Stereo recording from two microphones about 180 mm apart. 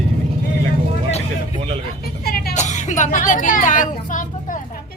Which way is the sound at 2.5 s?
40° left (ahead or behind).